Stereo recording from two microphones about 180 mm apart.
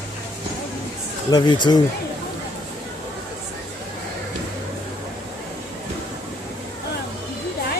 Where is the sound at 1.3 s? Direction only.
25° left (ahead or behind).